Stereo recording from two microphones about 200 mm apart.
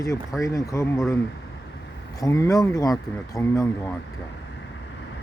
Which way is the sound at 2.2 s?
15° left (ahead or behind).